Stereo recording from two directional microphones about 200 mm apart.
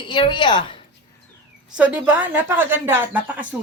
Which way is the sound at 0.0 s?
25° left (ahead or behind).